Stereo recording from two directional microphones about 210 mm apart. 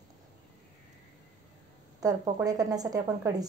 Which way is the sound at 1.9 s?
15° right (ahead or behind).